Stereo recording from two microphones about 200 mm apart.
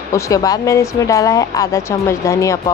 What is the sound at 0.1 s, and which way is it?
Speech, 15° left (ahead or behind).